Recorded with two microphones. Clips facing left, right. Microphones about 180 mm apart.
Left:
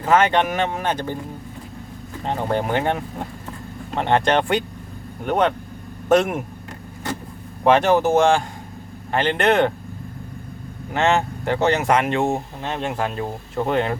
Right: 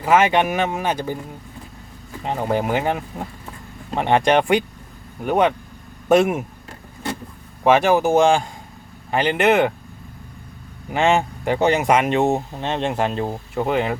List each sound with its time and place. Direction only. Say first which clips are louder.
0.0 s speech: right 1 dB; 10° right (ahead or behind)
2.2 s speech: right 1 dB; 5° right (ahead or behind)
7.6 s speech: even; 5° right (ahead or behind)
10.9 s speech: right 1 dB; 15° right (ahead or behind)
13.6 s speech: even; 5° right (ahead or behind)